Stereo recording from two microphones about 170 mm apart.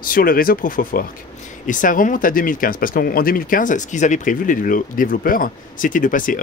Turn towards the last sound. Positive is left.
turn(degrees=50)  # may be behind; listen again after turning